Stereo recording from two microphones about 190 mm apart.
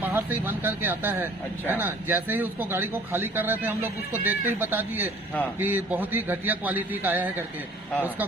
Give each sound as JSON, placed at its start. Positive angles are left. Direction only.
{"t": 0.0, "sound": "speech", "side_deg": -10}